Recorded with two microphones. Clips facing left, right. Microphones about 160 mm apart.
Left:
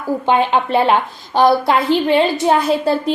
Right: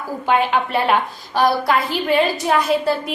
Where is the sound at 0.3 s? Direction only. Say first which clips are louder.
Left 2 dB; 30° left (ahead or behind).